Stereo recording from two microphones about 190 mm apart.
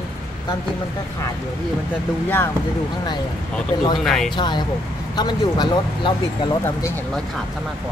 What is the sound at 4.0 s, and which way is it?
Speech, centre (ahead or behind).